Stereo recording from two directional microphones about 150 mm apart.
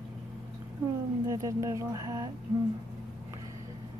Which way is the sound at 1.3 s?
20° right (ahead or behind).